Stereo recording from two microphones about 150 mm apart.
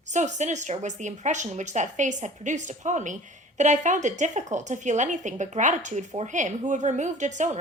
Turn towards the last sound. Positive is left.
turn(degrees=-55)  # may be behind; listen again after turning